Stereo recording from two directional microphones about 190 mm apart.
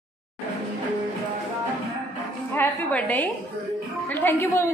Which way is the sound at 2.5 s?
10° left (ahead or behind).